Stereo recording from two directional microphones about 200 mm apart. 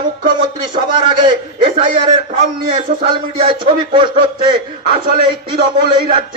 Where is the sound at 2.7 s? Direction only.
25° right (ahead or behind).